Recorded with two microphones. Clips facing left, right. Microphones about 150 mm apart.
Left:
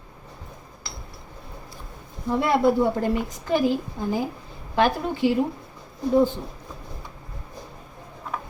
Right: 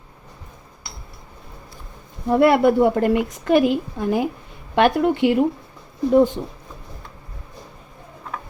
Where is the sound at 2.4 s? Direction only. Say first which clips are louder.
Right 5 dB; 70° right (ahead or behind).